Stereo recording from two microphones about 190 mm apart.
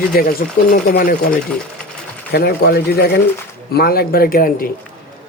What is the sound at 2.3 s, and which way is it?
A man's voice, 55° left (ahead or behind).